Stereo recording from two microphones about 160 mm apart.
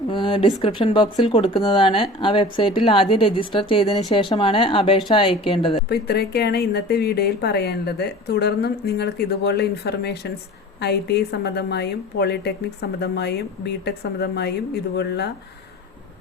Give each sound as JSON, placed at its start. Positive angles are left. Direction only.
{"t": 0.1, "sound": "speech", "side_deg": 30}
{"t": 5.9, "sound": "speech", "side_deg": 80}